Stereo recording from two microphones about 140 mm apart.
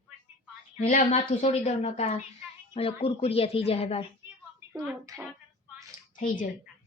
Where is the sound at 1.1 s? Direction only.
55° left (ahead or behind).